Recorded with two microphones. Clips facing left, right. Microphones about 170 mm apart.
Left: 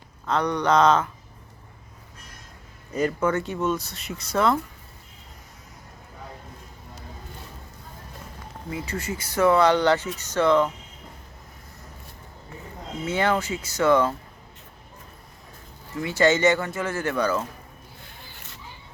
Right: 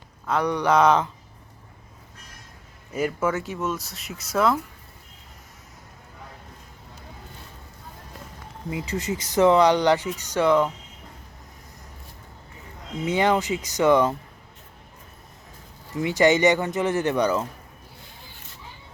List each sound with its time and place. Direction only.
0.3 s speech: 10° right (ahead or behind)
2.9 s speech: 5° right (ahead or behind)
8.7 s speech: 20° right (ahead or behind)
13.1 s speech: 15° right (ahead or behind)
16.0 s speech: 15° right (ahead or behind)